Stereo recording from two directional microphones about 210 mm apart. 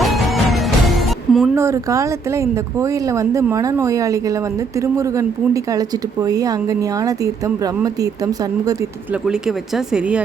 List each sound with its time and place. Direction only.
0.0 s music: centre (ahead or behind)
1.5 s a woman's voice: 15° right (ahead or behind)
9.2 s speech: centre (ahead or behind)